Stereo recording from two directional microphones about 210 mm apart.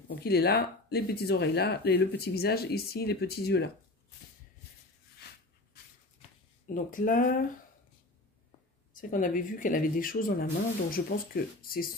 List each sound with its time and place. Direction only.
0.2 s speech: 50° left (ahead or behind)
6.7 s speech: 40° left (ahead or behind)
8.9 s speech: 40° left (ahead or behind)